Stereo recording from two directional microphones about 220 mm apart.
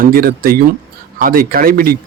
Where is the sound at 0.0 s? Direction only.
40° right (ahead or behind).